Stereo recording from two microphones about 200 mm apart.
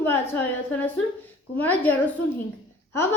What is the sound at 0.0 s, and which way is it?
A woman's voice, 10° left (ahead or behind).